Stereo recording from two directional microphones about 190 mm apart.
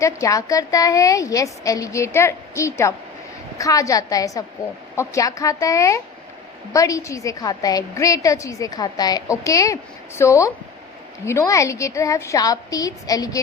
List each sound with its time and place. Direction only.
0.0 s a woman's voice: 15° left (ahead or behind)